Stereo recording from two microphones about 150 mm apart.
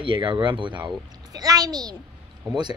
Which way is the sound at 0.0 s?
35° right (ahead or behind).